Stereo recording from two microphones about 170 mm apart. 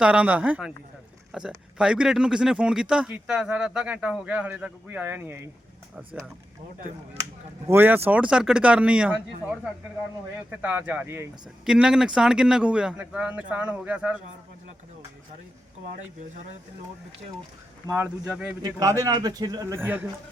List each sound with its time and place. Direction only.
0.0 s speech: 10° right (ahead or behind)
7.7 s speech: 15° right (ahead or behind)
17.8 s speech: 15° right (ahead or behind)
18.6 s a man's voice: 20° right (ahead or behind)
19.8 s speech: 10° right (ahead or behind)